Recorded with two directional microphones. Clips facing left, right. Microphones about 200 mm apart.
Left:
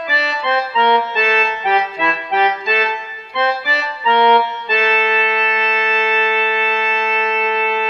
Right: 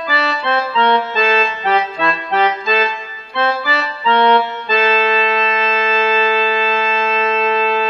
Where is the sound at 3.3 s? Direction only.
15° left (ahead or behind).